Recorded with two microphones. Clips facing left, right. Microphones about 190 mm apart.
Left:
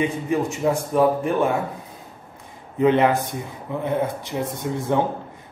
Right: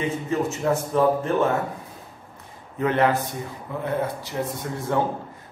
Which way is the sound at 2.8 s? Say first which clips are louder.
Left 4 dB; 15° left (ahead or behind).